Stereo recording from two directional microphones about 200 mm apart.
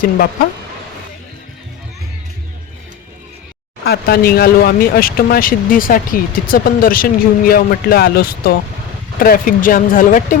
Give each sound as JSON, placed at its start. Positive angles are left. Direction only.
{"t": 3.8, "sound": "speech", "side_deg": 50}